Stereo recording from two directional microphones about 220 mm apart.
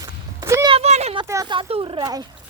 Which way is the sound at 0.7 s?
30° right (ahead or behind).